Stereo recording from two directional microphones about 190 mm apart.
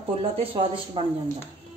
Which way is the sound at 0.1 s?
30° right (ahead or behind).